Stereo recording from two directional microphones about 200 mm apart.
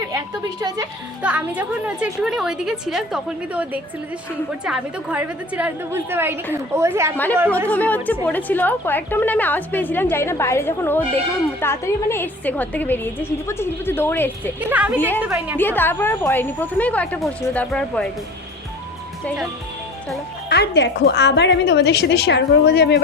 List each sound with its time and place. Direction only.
1.2 s a woman's voice: 5° right (ahead or behind)
7.7 s a woman's voice: 10° left (ahead or behind)
14.7 s a woman's voice: 5° right (ahead or behind)
14.9 s a woman's voice: 10° left (ahead or behind)
15.2 s a woman's voice: 10° right (ahead or behind)
15.5 s a woman's voice: 10° left (ahead or behind)
20.5 s a woman's voice: 55° left (ahead or behind)